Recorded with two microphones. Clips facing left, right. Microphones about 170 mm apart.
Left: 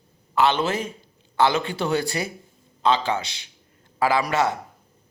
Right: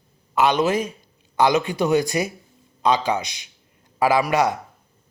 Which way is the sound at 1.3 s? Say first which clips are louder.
Right 2 dB; 15° right (ahead or behind).